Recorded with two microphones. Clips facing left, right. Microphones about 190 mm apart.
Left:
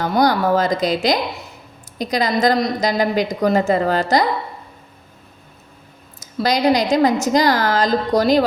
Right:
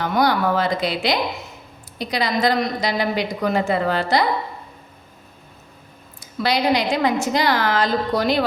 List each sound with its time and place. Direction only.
0.0 s a woman's voice: 40° left (ahead or behind)
6.1 s a woman's voice: 40° left (ahead or behind)